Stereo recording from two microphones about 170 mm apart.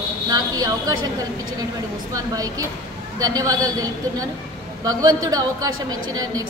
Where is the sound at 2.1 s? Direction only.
20° right (ahead or behind).